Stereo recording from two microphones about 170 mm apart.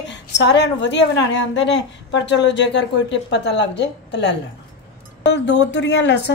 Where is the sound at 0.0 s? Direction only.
90° left.